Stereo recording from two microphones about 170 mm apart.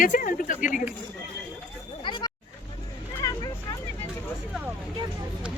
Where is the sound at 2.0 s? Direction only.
25° left (ahead or behind).